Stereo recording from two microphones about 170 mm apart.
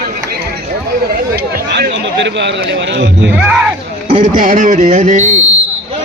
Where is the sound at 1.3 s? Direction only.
75° right (ahead or behind); by 3.3 s 90° right.